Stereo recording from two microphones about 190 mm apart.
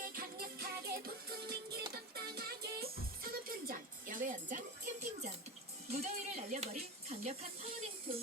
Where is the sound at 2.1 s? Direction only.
55° right (ahead or behind).